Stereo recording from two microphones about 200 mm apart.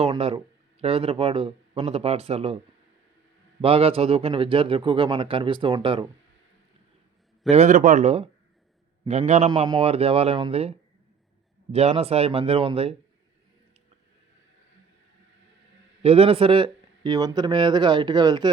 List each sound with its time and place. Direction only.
0.0 s speech: 30° right (ahead or behind)
3.6 s speech: 30° right (ahead or behind)
7.5 s speech: 40° right (ahead or behind)
9.5 s speech: 25° right (ahead or behind)
16.0 s speech: 30° right (ahead or behind)